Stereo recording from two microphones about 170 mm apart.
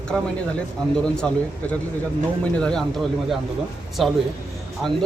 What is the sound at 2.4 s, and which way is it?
Speech, 5° left (ahead or behind).